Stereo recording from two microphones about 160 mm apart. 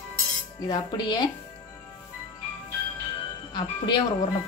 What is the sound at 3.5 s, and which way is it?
Speech, 25° left (ahead or behind).